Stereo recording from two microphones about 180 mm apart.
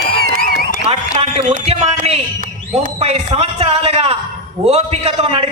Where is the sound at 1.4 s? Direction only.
35° right (ahead or behind).